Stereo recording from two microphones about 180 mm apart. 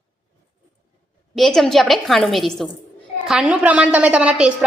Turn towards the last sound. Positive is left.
turn(degrees=-5)  # may be behind; listen again after turning